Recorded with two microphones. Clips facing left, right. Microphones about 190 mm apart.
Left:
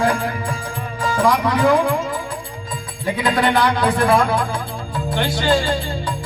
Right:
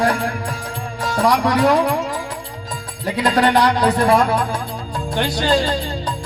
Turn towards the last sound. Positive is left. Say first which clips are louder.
# even
turn(degrees=-40)  # may be behind; listen again after turning